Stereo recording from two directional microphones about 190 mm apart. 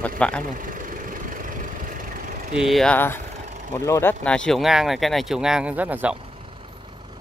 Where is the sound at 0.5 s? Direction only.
45° right (ahead or behind).